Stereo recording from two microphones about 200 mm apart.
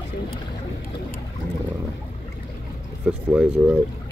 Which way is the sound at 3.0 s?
5° right (ahead or behind).